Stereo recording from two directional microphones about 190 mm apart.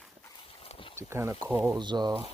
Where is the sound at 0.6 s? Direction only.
30° left (ahead or behind).